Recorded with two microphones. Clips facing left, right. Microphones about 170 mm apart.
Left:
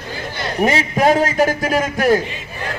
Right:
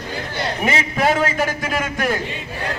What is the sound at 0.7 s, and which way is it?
A man's voice, 40° left (ahead or behind).